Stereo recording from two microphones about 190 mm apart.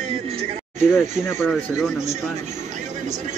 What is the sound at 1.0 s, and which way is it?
Speech, 10° left (ahead or behind).